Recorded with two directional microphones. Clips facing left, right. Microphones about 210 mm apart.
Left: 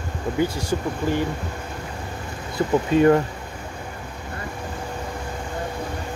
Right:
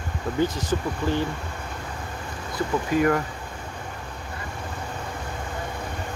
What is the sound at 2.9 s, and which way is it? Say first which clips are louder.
Speech: left 6 dB; 25° left (ahead or behind).